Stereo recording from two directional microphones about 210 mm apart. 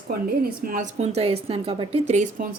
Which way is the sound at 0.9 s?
30° right (ahead or behind).